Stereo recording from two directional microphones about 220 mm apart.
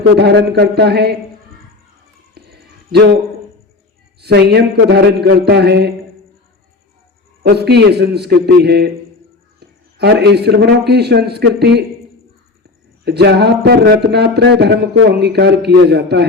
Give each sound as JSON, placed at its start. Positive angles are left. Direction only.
{"t": 0.2, "sound": "a man's voice", "side_deg": -50}
{"t": 2.4, "sound": "a sound", "side_deg": -50}
{"t": 4.2, "sound": "a man's voice", "side_deg": -50}
{"t": 7.4, "sound": "a man's voice", "side_deg": -50}
{"t": 13.1, "sound": "a man's voice", "side_deg": -50}